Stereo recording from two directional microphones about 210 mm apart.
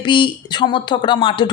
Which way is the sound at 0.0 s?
25° left (ahead or behind).